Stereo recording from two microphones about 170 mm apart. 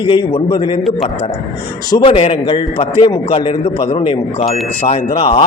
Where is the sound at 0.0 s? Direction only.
30° left (ahead or behind).